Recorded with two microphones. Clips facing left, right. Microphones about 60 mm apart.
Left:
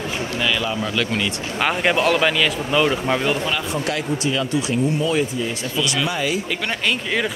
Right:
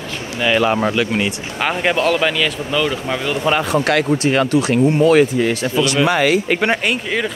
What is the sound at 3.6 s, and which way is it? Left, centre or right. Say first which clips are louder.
Speech: right 7 dB; right.